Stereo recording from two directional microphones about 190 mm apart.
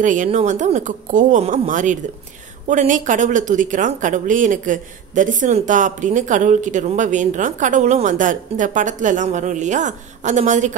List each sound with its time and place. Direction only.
0.0 s speech: 40° right (ahead or behind)